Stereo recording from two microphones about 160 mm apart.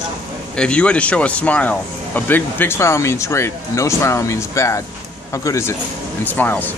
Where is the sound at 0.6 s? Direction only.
5° left (ahead or behind).